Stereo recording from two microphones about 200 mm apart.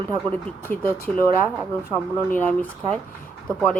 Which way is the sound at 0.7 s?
45° left (ahead or behind).